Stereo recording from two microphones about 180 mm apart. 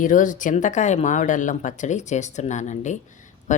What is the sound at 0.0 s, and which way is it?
Speech, 45° left (ahead or behind).